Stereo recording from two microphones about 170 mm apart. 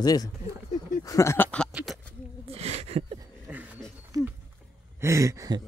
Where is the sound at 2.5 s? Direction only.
40° right (ahead or behind).